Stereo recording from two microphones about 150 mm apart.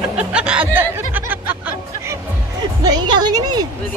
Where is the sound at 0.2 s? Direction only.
5° right (ahead or behind).